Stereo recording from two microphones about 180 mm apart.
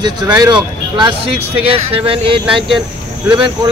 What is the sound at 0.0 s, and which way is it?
Speech, 20° right (ahead or behind).